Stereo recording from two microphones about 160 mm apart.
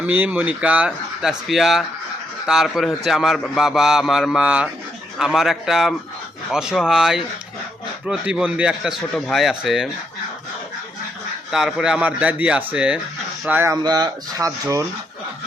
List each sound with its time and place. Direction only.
0.0 s a man's voice: 10° right (ahead or behind)
11.5 s speech: 5° right (ahead or behind); by 14.8 s 20° right (ahead or behind)